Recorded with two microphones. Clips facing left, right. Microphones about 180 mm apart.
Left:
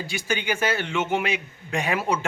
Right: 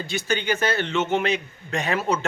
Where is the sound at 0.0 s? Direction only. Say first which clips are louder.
Right 2 dB; 10° left (ahead or behind).